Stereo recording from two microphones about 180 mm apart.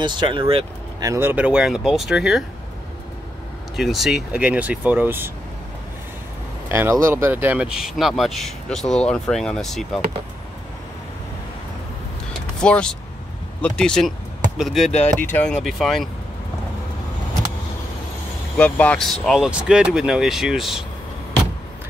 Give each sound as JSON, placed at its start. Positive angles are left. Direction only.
{"t": 0.0, "sound": "speech", "side_deg": -25}
{"t": 1.0, "sound": "speech", "side_deg": -15}
{"t": 3.7, "sound": "speech", "side_deg": 0}
{"t": 6.7, "sound": "speech", "side_deg": -15}
{"t": 12.5, "sound": "speech", "side_deg": 5}
{"t": 14.9, "sound": "speech", "side_deg": 35}
{"t": 15.1, "sound": "speech", "side_deg": 10}
{"t": 18.6, "sound": "speech", "side_deg": 5}